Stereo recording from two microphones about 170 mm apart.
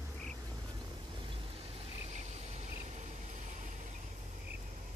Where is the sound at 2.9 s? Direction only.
45° right (ahead or behind).